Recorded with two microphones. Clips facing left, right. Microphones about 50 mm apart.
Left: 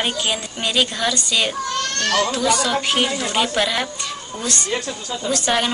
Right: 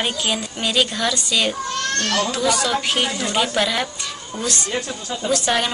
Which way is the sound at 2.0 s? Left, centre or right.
Left.